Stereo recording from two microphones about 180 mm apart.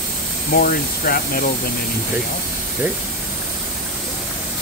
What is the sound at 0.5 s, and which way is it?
Speech, 55° left (ahead or behind).